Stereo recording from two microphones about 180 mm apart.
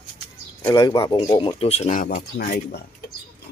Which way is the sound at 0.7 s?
25° left (ahead or behind).